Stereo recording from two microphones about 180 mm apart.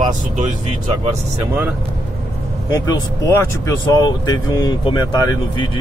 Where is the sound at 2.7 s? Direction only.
20° left (ahead or behind).